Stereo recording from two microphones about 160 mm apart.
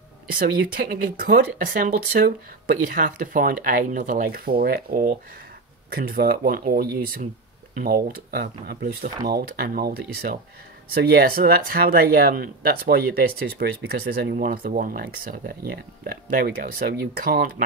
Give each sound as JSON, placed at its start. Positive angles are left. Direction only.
{"t": 0.4, "sound": "speech", "side_deg": -70}
{"t": 14.3, "sound": "speech", "side_deg": -65}